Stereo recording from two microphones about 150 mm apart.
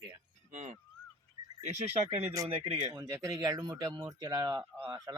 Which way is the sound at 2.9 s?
20° right (ahead or behind).